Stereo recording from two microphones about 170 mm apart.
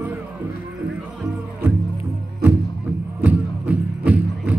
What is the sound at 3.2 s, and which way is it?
Music, 10° right (ahead or behind).